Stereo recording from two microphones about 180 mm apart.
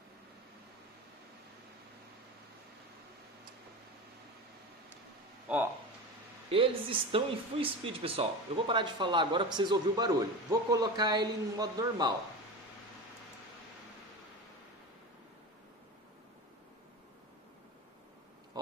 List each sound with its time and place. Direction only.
6.5 s speech: 30° right (ahead or behind)